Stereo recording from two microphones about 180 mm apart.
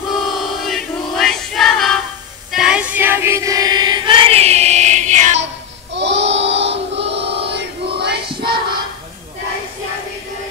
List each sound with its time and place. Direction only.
0.4 s music: centre (ahead or behind)
2.5 s choir: 5° right (ahead or behind); by 5.4 s 40° right (ahead or behind)
5.9 s child singing: 80° right
7.5 s chant: 70° right (ahead or behind)
8.3 s child singing: 30° right (ahead or behind)